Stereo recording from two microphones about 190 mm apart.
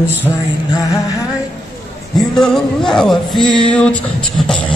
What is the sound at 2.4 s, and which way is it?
Speech, centre (ahead or behind).